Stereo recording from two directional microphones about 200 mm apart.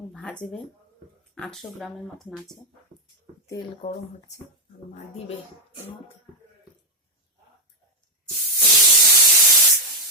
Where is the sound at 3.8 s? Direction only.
25° left (ahead or behind).